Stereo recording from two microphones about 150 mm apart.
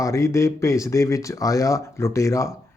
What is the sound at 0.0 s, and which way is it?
Speech, 20° left (ahead or behind).